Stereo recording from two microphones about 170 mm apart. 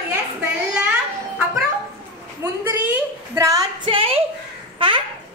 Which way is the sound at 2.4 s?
10° right (ahead or behind).